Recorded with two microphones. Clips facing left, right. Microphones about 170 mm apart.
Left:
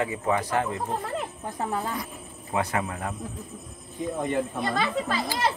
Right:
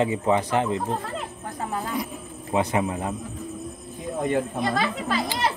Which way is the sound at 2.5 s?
20° right (ahead or behind).